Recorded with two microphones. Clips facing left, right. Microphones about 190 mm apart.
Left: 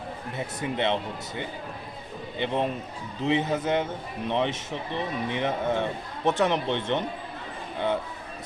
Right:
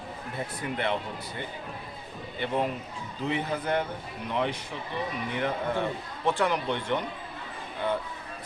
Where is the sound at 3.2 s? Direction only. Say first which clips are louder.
Left 4 dB; 20° left (ahead or behind).